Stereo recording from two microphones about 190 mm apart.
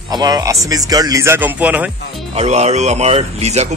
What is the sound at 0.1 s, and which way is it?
Speech, 20° right (ahead or behind).